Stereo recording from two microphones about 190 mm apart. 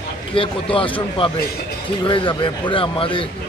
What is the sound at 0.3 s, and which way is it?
Speech, 30° left (ahead or behind).